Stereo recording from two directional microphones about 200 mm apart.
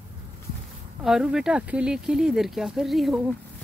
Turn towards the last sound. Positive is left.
turn(degrees=0)  # may be behind; listen again after turning